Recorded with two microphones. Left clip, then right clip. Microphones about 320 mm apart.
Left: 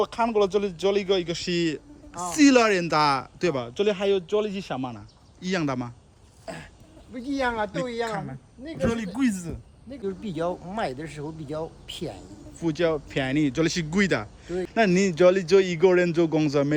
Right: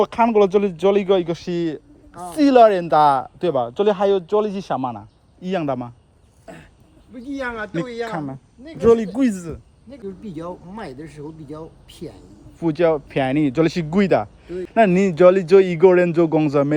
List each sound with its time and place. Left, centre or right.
0.0 s speech: centre
3.6 s speech: centre
5.5 s speech: centre
7.3 s a man's voice: left
8.6 s speech: centre
10.2 s speech: centre
12.5 s speech: centre